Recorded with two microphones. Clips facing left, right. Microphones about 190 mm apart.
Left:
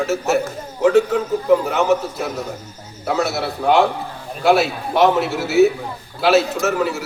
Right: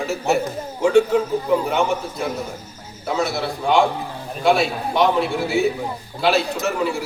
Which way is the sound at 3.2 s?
5° left (ahead or behind).